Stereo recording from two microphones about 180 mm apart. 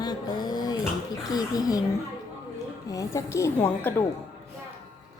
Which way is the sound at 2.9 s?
20° left (ahead or behind).